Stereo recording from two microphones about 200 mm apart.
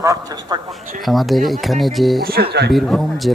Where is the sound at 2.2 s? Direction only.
50° right (ahead or behind).